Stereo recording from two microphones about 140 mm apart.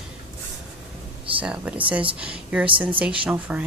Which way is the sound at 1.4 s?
10° right (ahead or behind).